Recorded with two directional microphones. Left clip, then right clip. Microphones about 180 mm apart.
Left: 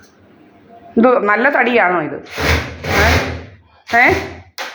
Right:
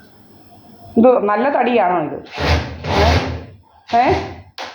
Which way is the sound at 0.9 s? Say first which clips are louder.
Left 1 dB; 45° left (ahead or behind).